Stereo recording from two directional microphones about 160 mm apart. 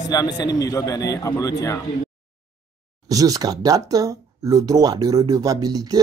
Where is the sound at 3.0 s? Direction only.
20° right (ahead or behind).